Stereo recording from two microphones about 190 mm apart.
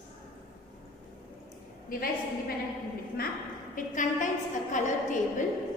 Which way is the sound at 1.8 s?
50° left (ahead or behind).